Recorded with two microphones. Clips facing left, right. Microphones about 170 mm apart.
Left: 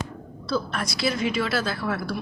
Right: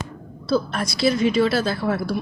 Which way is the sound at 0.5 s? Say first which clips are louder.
Right 5 dB; 35° right (ahead or behind).